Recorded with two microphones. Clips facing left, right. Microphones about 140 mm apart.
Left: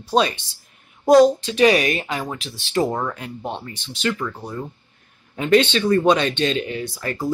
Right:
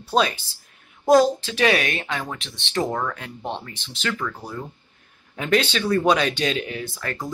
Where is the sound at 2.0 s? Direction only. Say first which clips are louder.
Left 2 dB; 15° left (ahead or behind).